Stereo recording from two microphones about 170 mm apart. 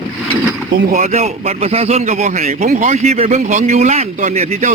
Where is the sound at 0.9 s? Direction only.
45° right (ahead or behind).